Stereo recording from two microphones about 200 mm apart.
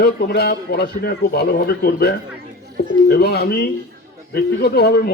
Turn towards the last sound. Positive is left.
turn(degrees=55)  # may be behind; listen again after turning